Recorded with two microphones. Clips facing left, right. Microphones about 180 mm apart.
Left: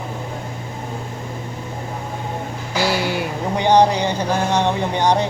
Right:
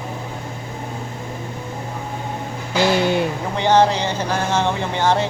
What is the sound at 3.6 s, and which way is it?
Speech, 15° left (ahead or behind).